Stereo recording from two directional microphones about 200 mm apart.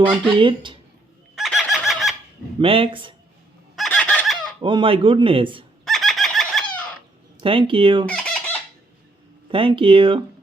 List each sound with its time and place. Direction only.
0.0 s speech: 25° right (ahead or behind)
1.4 s fowl: centre (ahead or behind)
2.6 s speech: 25° right (ahead or behind)
3.8 s fowl: 5° left (ahead or behind)
4.6 s speech: 25° right (ahead or behind)
5.8 s chicken: centre (ahead or behind)
7.4 s speech: 25° right (ahead or behind)
8.0 s chicken: 5° left (ahead or behind)
9.5 s speech: 25° right (ahead or behind)